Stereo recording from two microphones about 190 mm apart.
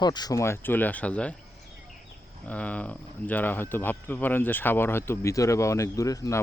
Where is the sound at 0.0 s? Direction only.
20° left (ahead or behind); by 1.4 s 5° left (ahead or behind).